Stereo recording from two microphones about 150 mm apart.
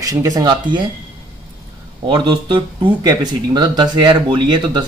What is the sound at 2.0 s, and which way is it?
Speech, 30° right (ahead or behind).